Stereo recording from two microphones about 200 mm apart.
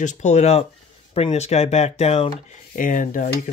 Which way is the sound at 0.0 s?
35° left (ahead or behind).